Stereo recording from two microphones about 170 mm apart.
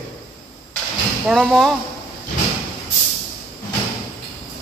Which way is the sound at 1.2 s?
Centre (ahead or behind).